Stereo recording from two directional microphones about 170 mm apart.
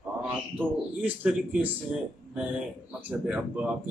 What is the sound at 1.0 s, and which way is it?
Speech, 10° right (ahead or behind).